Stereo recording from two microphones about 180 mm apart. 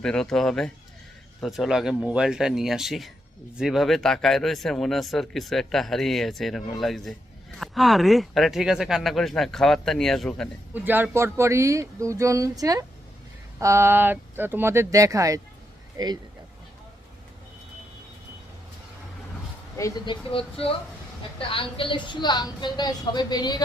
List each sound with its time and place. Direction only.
0.0 s speech: 5° left (ahead or behind)
10.8 s speech: 10° right (ahead or behind)
19.7 s speech: 15° left (ahead or behind)
21.3 s a woman's voice: 30° left (ahead or behind)